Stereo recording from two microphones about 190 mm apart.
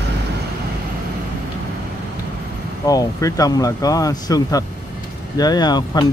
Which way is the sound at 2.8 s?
20° left (ahead or behind).